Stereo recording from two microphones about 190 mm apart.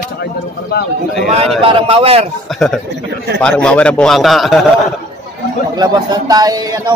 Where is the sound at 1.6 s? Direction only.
30° right (ahead or behind).